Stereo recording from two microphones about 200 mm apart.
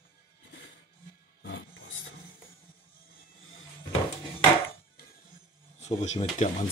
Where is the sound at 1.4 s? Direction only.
75° left (ahead or behind).